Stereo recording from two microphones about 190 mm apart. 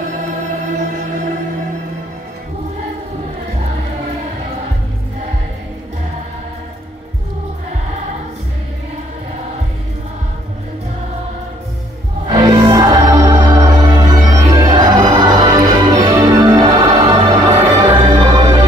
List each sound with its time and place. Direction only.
12.4 s music: 15° right (ahead or behind)